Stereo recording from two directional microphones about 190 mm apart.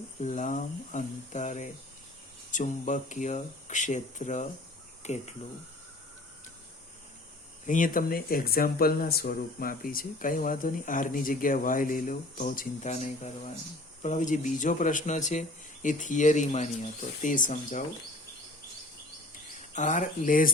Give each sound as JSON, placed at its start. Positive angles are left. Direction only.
{"t": 0.2, "sound": "speech", "side_deg": 40}
{"t": 7.7, "sound": "speech", "side_deg": 45}
{"t": 19.7, "sound": "speech", "side_deg": 40}